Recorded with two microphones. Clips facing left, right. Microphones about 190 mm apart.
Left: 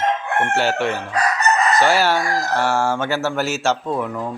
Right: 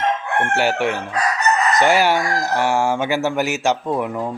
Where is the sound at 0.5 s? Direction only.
15° right (ahead or behind).